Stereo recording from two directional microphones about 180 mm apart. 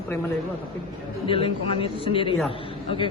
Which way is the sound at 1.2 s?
30° left (ahead or behind).